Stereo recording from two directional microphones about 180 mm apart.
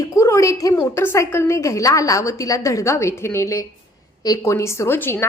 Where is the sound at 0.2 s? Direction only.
15° left (ahead or behind).